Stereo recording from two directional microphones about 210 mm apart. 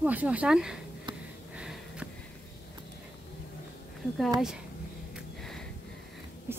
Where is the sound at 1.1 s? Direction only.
20° right (ahead or behind).